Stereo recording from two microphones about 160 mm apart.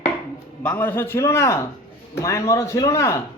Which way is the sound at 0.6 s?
10° left (ahead or behind).